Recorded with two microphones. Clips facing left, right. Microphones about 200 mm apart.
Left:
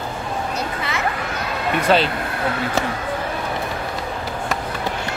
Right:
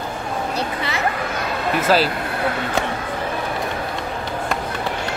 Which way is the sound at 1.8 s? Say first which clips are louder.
Even; 5° right (ahead or behind).